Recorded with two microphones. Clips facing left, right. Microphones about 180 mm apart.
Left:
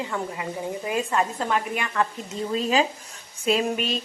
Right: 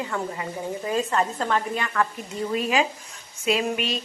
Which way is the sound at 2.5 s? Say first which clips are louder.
Left 1 dB; 25° left (ahead or behind).